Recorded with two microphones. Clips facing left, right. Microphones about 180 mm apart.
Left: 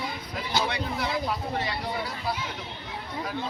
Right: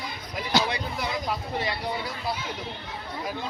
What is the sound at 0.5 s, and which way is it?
Speech, 80° right.